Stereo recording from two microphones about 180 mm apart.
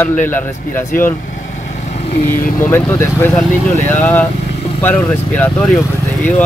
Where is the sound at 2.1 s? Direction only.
50° left (ahead or behind).